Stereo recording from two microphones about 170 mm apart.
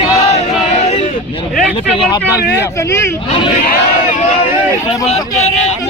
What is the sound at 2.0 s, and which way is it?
Speech, 25° left (ahead or behind).